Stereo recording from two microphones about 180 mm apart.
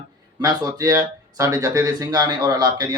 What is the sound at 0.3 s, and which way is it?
Speech, 20° right (ahead or behind).